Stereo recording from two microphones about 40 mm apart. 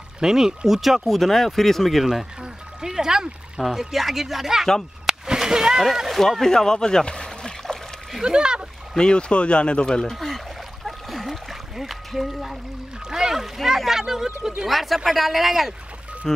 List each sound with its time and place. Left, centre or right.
0.2 s speech: centre
2.0 s speech: centre
5.0 s a sound: centre
5.8 s speech: centre
6.4 s a sound: centre
8.2 s speech: right
8.9 s speech: left
10.1 s pour: centre
10.9 s a sound: centre
13.1 s speech: centre
16.3 s speech: centre